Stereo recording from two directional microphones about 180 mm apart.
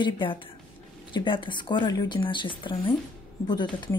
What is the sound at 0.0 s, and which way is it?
Speech, 30° left (ahead or behind).